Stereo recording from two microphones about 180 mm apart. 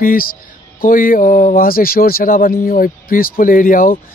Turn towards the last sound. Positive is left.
turn(degrees=50)  # may be behind; listen again after turning